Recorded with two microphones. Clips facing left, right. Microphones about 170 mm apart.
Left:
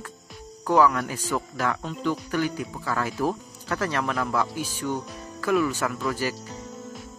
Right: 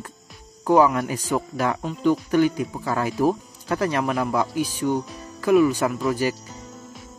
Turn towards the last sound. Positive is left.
turn(degrees=-15)  # may be behind; listen again after turning